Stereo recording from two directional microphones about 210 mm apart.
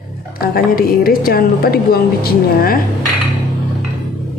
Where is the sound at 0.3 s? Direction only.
45° left (ahead or behind).